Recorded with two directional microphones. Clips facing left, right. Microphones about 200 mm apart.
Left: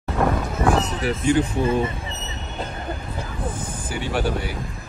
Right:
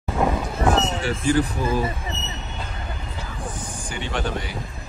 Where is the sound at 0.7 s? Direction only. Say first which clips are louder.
Even; 25° right (ahead or behind).